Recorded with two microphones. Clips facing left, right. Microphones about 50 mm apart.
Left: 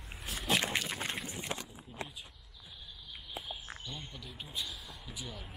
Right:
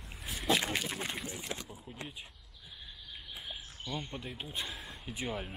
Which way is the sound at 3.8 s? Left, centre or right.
Right.